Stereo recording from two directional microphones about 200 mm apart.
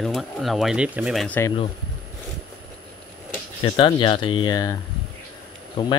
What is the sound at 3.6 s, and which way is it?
Speech, 25° left (ahead or behind).